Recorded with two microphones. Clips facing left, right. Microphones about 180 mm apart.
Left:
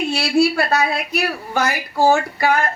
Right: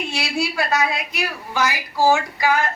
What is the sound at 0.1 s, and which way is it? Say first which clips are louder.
A woman's voice: left 8 dB; 60° left (ahead or behind).